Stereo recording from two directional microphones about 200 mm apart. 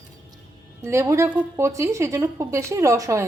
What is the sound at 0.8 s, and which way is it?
A woman's voice, 15° right (ahead or behind).